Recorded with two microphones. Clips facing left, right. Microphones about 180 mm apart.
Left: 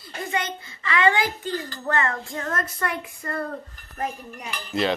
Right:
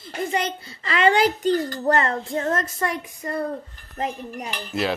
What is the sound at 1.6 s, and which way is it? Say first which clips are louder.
Speech: right 7 dB; 40° right (ahead or behind).